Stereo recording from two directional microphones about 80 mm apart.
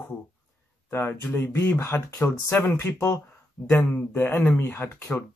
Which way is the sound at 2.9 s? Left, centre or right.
Left.